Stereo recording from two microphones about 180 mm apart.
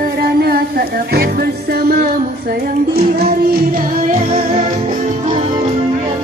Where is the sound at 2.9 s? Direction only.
60° right (ahead or behind).